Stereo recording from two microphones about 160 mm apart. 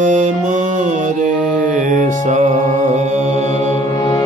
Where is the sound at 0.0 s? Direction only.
50° right (ahead or behind).